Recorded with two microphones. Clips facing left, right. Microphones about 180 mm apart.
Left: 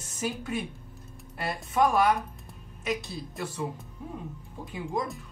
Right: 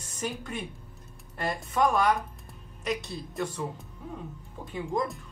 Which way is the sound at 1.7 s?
5° left (ahead or behind).